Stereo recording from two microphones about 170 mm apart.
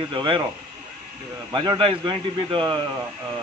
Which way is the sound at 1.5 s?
25° right (ahead or behind).